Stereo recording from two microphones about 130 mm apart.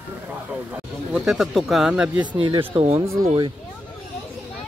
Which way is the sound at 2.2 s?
35° right (ahead or behind).